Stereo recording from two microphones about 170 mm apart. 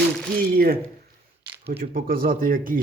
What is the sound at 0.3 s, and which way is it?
Speech, 60° right (ahead or behind).